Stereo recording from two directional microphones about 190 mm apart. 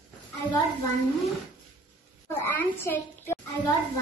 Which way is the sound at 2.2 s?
10° left (ahead or behind).